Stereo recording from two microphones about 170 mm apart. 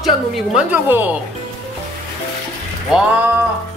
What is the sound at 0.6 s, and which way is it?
Speech, 10° right (ahead or behind).